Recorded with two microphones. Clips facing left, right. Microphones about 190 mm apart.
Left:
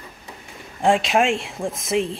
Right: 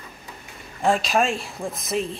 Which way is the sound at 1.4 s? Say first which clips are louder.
Left 3 dB; 25° left (ahead or behind).